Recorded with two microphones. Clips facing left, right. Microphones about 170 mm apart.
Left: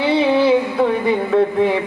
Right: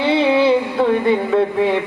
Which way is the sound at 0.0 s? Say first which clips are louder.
Even; centre (ahead or behind).